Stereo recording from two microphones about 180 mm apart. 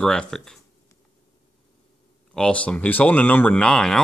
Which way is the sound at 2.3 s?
5° left (ahead or behind).